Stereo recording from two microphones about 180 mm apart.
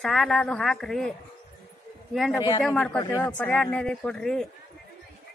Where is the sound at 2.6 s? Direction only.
5° left (ahead or behind).